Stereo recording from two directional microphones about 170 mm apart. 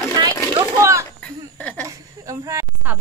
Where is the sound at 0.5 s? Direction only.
20° right (ahead or behind).